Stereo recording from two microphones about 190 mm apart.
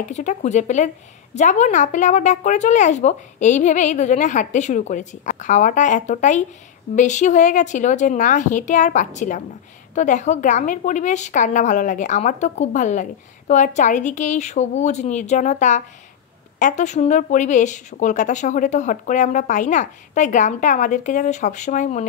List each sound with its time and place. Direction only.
0.1 s a woman's voice: 40° left (ahead or behind)